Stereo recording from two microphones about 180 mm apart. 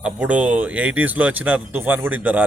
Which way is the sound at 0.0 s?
5° right (ahead or behind).